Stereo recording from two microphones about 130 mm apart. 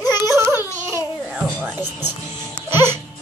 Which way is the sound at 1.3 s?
5° right (ahead or behind).